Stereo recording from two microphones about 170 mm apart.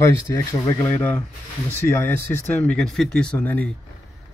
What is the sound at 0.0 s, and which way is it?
Speech, 20° left (ahead or behind).